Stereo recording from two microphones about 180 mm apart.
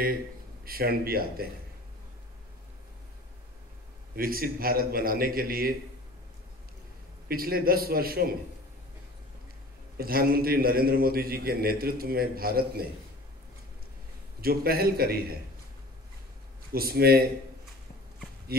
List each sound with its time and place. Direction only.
0.7 s a man's voice: 55° right (ahead or behind)
4.1 s a man's voice: 55° right (ahead or behind)
7.2 s a man's voice: 55° right (ahead or behind)
9.9 s a man's voice: 55° right (ahead or behind)
14.4 s a man's voice: 55° right (ahead or behind)
16.7 s a man's voice: 60° right (ahead or behind)
18.5 s a man's voice: 60° right (ahead or behind)